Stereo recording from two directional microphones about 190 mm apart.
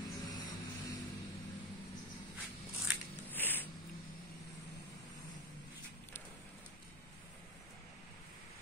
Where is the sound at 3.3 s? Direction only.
10° left (ahead or behind).